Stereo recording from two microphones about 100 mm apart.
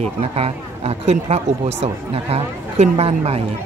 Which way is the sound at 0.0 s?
90° right.